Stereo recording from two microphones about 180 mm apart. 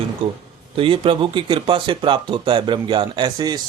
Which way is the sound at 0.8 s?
30° right (ahead or behind).